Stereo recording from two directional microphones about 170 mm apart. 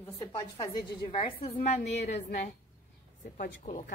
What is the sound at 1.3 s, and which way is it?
Speech, 35° left (ahead or behind).